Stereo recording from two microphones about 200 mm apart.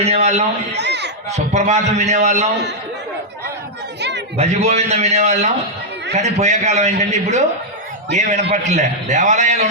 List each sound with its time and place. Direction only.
0.0 s a man's voice: 30° right (ahead or behind)
0.7 s a sound: 60° right (ahead or behind)
1.3 s a man's voice: 35° right (ahead or behind)
4.4 s a man's voice: 35° right (ahead or behind)